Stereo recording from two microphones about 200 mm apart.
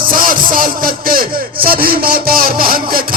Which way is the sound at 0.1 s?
45° right (ahead or behind).